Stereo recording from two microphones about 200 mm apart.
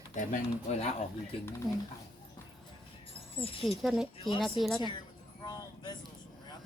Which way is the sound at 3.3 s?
30° left (ahead or behind).